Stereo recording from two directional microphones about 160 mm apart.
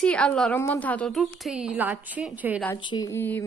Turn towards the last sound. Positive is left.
turn(degrees=15)  # may be behind; listen again after turning